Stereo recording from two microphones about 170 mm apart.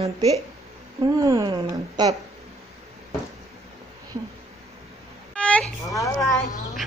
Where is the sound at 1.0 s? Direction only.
20° right (ahead or behind).